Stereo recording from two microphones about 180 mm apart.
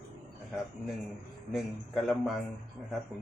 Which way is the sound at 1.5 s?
Centre (ahead or behind).